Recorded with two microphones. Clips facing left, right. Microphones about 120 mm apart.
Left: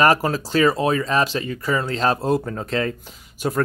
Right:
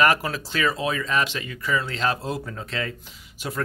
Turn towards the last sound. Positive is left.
turn(degrees=45)  # may be behind; listen again after turning